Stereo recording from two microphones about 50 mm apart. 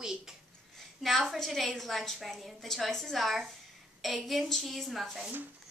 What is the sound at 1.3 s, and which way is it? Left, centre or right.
A woman's voice, centre.